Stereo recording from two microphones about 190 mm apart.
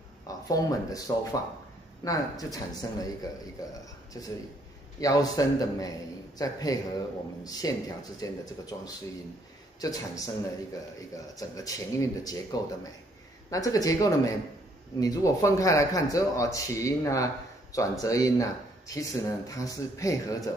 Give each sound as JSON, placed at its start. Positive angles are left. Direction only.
{"t": 0.3, "sound": "a man's voice", "side_deg": 20}
{"t": 5.0, "sound": "a man's voice", "side_deg": 20}